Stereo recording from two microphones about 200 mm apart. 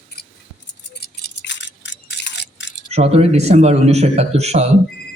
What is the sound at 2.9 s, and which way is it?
A man's voice, 30° right (ahead or behind).